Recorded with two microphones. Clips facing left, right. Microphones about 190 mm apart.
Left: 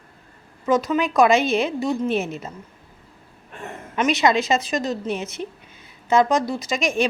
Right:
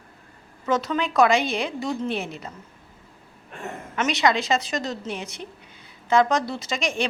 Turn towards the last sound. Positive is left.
turn(degrees=20)  # may be behind; listen again after turning